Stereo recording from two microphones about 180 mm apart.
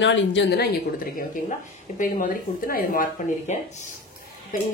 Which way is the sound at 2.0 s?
50° left (ahead or behind).